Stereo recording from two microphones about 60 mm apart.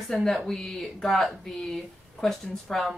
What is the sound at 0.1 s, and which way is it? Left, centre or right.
A woman's voice, centre.